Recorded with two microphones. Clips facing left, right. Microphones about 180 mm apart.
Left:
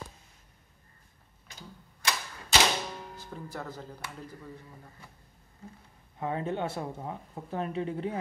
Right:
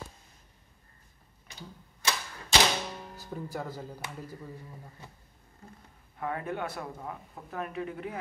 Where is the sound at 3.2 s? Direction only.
10° right (ahead or behind).